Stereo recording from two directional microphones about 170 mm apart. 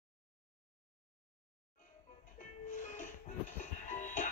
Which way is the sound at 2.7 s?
50° left (ahead or behind).